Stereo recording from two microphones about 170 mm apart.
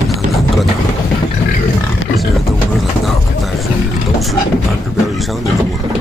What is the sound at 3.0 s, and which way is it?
Vehicle, centre (ahead or behind).